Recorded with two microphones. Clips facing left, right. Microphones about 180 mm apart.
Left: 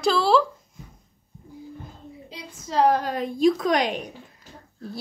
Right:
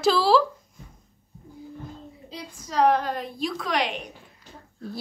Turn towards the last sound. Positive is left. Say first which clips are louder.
# left 4 dB
turn(degrees=45)  # may be behind; listen again after turning